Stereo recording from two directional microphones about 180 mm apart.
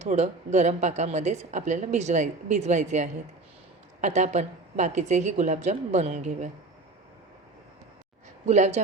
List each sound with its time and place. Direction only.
0.0 s a woman's voice: 40° right (ahead or behind)
8.4 s a woman's voice: 40° right (ahead or behind)